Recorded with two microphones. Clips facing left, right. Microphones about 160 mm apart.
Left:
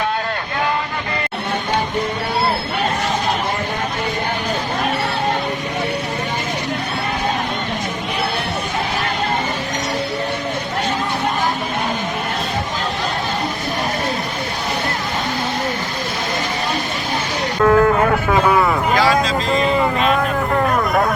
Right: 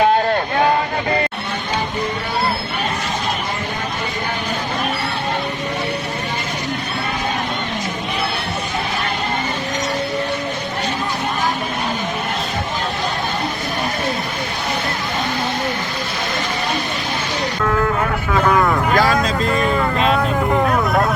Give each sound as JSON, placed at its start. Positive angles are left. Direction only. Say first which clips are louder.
{"t": 17.6, "sound": "music", "louder": "left 7 dB", "side_deg": 40}
{"t": 18.4, "sound": "vehicle", "louder": "right 3 dB", "side_deg": 5}
{"t": 18.9, "sound": "vehicle", "louder": "left 1 dB", "side_deg": -50}
{"t": 20.5, "sound": "a sound", "louder": "even", "side_deg": -5}